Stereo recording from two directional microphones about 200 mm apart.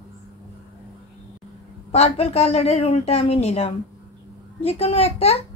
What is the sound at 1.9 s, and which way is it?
A woman's voice, 30° left (ahead or behind).